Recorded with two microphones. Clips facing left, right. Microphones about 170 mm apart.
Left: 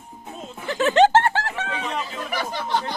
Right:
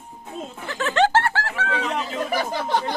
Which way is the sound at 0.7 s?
20° left (ahead or behind).